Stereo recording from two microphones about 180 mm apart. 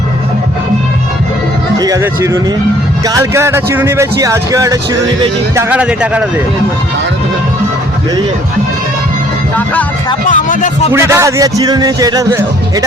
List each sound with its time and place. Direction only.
1.8 s speech: 20° right (ahead or behind)
10.2 s speech: 45° left (ahead or behind)
10.9 s speech: 15° right (ahead or behind)